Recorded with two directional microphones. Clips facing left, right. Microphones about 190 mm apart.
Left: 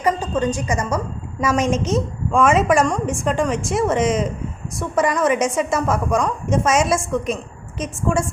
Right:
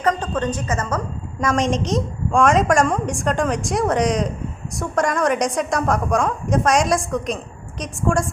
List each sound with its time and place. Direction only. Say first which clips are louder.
0.0 s a woman's voice: left 1 dB; 10° left (ahead or behind)